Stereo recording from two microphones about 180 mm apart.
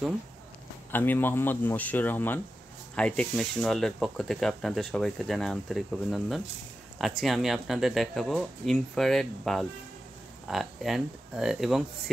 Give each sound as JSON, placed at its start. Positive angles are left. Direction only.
{"t": 0.9, "sound": "speech", "side_deg": 10}